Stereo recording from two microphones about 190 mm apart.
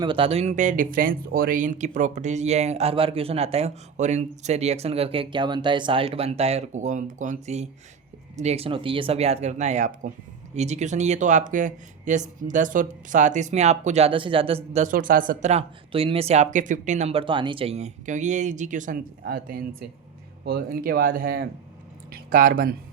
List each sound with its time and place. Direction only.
0.0 s speech: 25° right (ahead or behind)
19.2 s speech: 55° right (ahead or behind)